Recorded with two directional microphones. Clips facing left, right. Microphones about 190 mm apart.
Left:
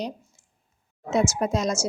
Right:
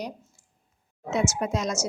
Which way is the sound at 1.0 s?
35° left (ahead or behind).